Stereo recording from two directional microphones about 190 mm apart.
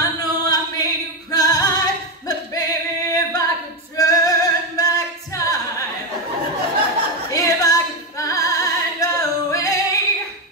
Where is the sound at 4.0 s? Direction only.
20° left (ahead or behind).